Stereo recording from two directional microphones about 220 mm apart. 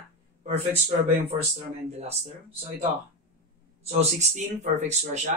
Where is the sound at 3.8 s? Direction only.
30° right (ahead or behind).